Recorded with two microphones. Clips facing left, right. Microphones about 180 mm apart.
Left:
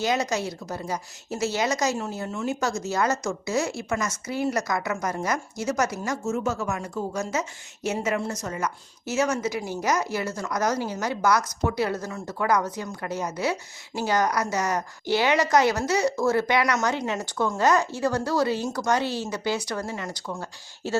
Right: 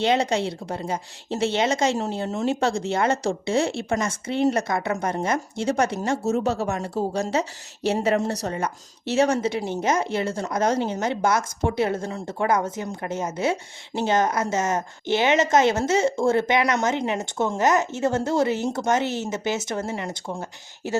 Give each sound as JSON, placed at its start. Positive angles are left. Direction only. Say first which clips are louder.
{"t": 0.0, "sound": "a woman's voice", "louder": "right 4 dB", "side_deg": -30}